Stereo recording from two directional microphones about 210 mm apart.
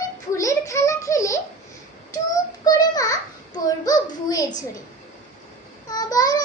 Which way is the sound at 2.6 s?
15° left (ahead or behind).